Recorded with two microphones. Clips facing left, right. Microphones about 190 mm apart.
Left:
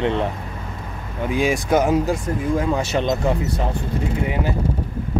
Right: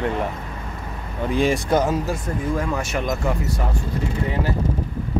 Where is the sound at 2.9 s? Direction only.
25° left (ahead or behind).